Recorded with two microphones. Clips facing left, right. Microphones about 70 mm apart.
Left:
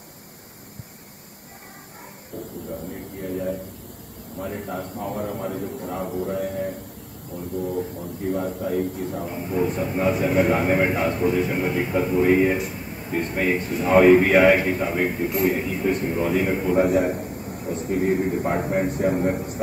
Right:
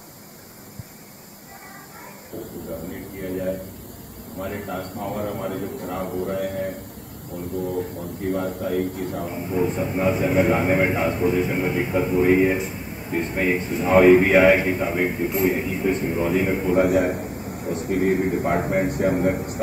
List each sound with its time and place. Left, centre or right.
3.2 s a man's voice: right
7.3 s a man's voice: centre
8.7 s a man's voice: right
9.1 s a man's voice: centre
17.2 s a sound: centre
17.8 s a man's voice: right
18.1 s a man's voice: centre